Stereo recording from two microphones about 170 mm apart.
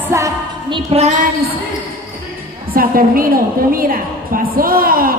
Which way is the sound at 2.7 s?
55° right (ahead or behind).